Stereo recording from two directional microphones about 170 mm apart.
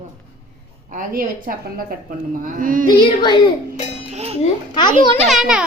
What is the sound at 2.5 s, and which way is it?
Music, 55° right (ahead or behind).